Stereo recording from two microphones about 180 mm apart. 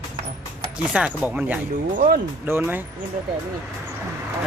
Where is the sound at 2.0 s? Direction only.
50° right (ahead or behind).